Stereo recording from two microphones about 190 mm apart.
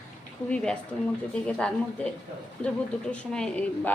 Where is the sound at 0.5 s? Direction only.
5° left (ahead or behind).